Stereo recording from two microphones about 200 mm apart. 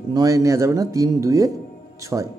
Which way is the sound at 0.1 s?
15° right (ahead or behind).